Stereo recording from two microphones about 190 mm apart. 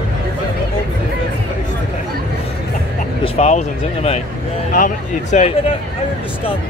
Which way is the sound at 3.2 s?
35° left (ahead or behind).